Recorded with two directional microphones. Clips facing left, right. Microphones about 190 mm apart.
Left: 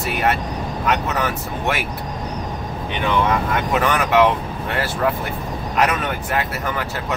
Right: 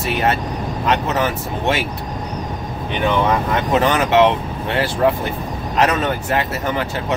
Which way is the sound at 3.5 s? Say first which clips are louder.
Right 3 dB; 25° right (ahead or behind).